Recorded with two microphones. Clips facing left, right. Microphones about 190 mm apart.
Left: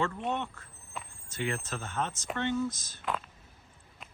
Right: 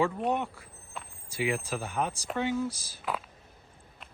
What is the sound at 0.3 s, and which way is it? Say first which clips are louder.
Speech: right 4 dB; 15° right (ahead or behind).